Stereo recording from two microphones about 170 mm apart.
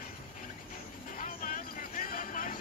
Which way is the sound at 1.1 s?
55° left (ahead or behind).